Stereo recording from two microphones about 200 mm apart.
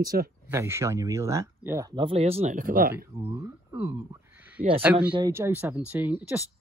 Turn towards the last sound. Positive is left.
turn(degrees=-10)  # may be behind; listen again after turning